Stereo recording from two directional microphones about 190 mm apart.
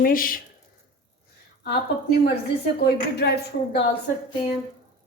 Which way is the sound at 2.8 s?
60° left (ahead or behind).